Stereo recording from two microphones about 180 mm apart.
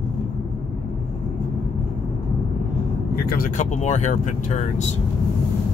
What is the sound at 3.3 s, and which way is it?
Speech, 50° left (ahead or behind).